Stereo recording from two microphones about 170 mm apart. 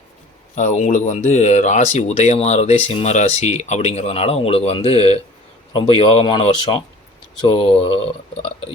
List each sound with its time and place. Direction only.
0.5 s speech: 45° left (ahead or behind)